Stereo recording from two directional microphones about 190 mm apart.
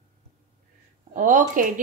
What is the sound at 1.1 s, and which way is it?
Speech, 45° right (ahead or behind).